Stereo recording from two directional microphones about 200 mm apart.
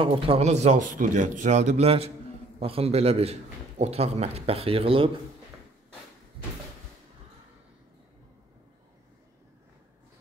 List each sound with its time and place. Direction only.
0.0 s a man's voice: 25° right (ahead or behind)